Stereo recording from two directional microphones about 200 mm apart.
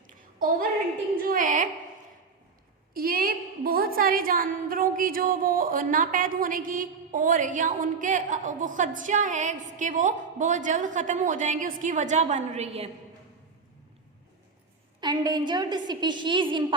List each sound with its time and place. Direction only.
0.1 s a sound: 45° right (ahead or behind)
1.1 s a woman's voice: 45° right (ahead or behind)
2.9 s a woman's voice: 45° right (ahead or behind); by 12.9 s 30° right (ahead or behind)
15.0 s a woman's voice: 20° right (ahead or behind)